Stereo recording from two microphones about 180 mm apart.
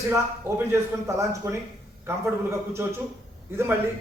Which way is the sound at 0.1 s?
15° right (ahead or behind).